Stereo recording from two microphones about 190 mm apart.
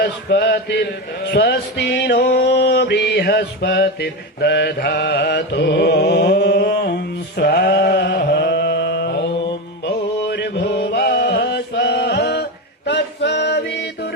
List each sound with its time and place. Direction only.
0.0 s mantra: 60° left (ahead or behind)